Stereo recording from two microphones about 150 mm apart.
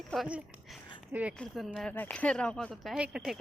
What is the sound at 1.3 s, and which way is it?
Speech, centre (ahead or behind).